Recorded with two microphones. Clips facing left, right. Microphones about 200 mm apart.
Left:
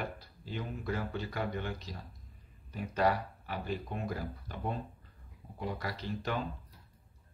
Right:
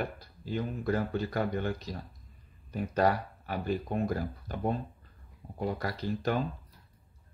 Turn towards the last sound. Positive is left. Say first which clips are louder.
# right 5 dB
turn(degrees=-45)  # may be behind; listen again after turning